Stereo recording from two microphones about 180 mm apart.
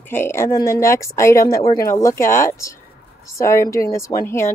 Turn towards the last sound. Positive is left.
turn(degrees=15)  # may be behind; listen again after turning